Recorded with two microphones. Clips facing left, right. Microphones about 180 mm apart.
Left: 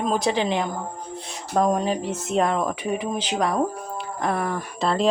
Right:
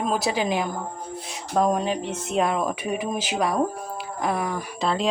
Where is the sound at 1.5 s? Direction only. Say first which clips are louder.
Left 1 dB; centre (ahead or behind).